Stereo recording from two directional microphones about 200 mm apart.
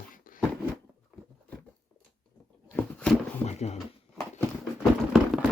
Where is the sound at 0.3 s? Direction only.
45° left (ahead or behind).